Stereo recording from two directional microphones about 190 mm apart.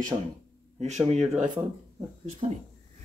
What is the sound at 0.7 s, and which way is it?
Speech, 35° right (ahead or behind).